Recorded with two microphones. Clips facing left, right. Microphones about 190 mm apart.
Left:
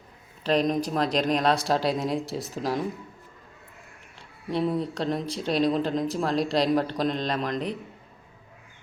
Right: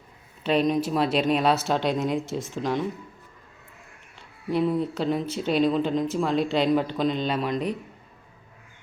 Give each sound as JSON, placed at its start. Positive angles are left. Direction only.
{"t": 0.4, "sound": "speech", "side_deg": -5}
{"t": 4.6, "sound": "speech", "side_deg": 0}